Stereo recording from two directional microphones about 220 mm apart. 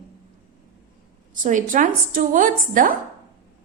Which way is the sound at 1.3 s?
35° right (ahead or behind).